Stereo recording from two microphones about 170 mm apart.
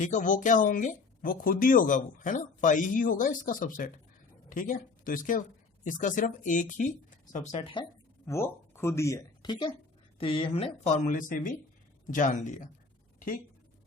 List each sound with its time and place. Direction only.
0.0 s speech: 50° left (ahead or behind)
7.3 s speech: 35° left (ahead or behind)
8.3 s speech: 15° left (ahead or behind); by 12.6 s 50° left (ahead or behind)